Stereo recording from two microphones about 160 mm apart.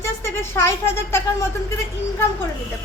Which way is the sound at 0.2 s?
15° left (ahead or behind).